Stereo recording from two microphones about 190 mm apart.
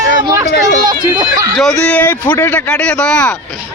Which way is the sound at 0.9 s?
25° right (ahead or behind).